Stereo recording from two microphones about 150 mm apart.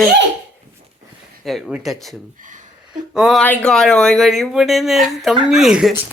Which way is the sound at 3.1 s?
5° right (ahead or behind).